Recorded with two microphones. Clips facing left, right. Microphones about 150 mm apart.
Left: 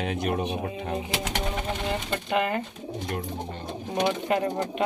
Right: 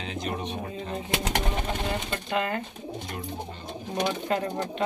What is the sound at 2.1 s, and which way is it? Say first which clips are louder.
Speech: left 4 dB; 20° left (ahead or behind).